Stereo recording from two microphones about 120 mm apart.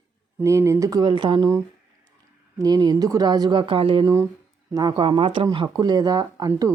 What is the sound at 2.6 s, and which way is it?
Speech, 30° right (ahead or behind).